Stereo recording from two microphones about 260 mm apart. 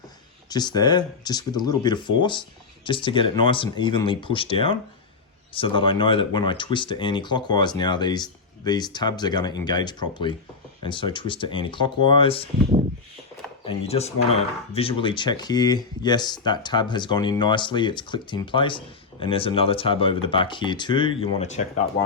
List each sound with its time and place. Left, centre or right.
0.5 s speech: centre
13.7 s speech: left